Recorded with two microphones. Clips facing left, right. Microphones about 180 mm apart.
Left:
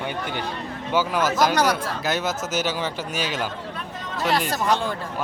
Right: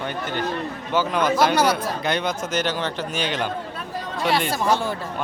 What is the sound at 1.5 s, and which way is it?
Speech, 10° right (ahead or behind).